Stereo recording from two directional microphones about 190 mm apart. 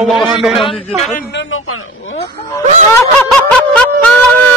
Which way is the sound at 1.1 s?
55° left (ahead or behind).